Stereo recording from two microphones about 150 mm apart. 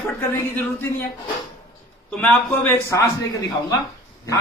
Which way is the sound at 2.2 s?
10° left (ahead or behind).